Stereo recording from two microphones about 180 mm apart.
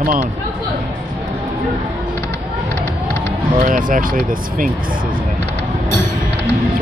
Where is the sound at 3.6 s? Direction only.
50° right (ahead or behind).